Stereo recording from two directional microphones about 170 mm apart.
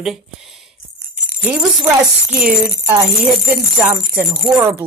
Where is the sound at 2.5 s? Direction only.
60° right (ahead or behind).